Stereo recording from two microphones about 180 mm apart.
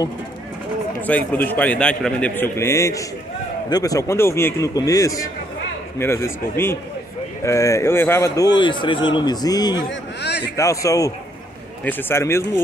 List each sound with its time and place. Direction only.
1.0 s a man's voice: 10° left (ahead or behind)
9.8 s a man's voice: 70° left (ahead or behind)
10.5 s a man's voice: 15° left (ahead or behind)